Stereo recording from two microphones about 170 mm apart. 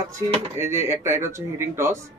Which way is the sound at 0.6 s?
15° right (ahead or behind).